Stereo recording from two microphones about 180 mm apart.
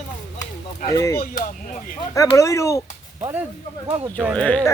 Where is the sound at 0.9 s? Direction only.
20° left (ahead or behind).